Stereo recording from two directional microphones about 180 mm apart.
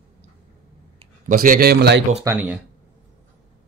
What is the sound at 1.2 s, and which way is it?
Speech, 50° right (ahead or behind).